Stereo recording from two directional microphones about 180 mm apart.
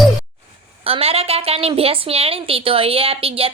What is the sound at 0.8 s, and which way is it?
A woman's voice, 30° right (ahead or behind).